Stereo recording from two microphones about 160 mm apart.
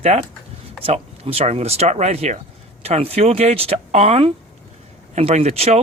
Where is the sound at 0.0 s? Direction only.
40° right (ahead or behind).